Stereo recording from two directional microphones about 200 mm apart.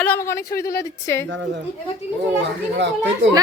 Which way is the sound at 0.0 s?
10° left (ahead or behind).